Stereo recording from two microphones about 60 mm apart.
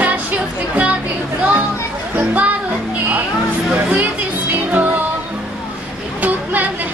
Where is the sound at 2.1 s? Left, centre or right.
Right.